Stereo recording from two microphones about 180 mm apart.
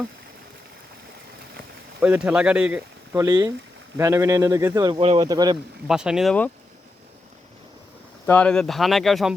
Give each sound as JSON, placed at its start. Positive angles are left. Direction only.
{"t": 2.0, "sound": "speech", "side_deg": -5}
{"t": 4.9, "sound": "speech", "side_deg": -30}
{"t": 5.9, "sound": "speech", "side_deg": -5}
{"t": 8.3, "sound": "speech", "side_deg": 5}